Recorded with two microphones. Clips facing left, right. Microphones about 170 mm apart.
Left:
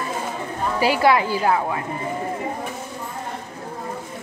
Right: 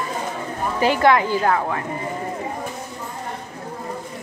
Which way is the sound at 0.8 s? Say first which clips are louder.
Right 1 dB; 10° left (ahead or behind).